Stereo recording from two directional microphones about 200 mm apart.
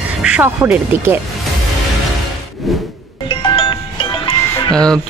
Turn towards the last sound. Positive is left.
turn(degrees=5)  # may be behind; listen again after turning